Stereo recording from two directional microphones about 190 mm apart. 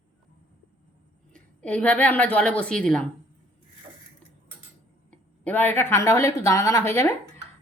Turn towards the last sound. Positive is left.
turn(degrees=10)  # may be behind; listen again after turning